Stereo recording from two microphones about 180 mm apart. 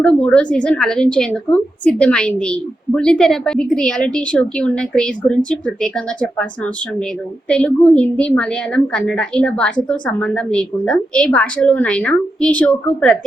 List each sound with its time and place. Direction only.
0.0 s a woman's voice: 5° left (ahead or behind)
7.4 s a woman's voice: 5° left (ahead or behind)